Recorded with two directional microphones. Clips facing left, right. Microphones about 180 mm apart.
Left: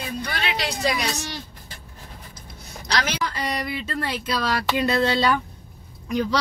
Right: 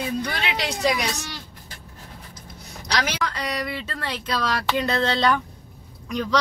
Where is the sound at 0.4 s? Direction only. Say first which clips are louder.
Right 1 dB; 20° right (ahead or behind).